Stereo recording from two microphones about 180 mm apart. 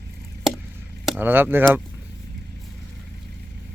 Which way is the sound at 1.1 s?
10° right (ahead or behind).